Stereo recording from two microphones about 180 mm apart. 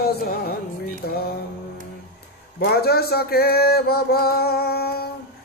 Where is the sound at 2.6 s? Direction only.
60° left (ahead or behind).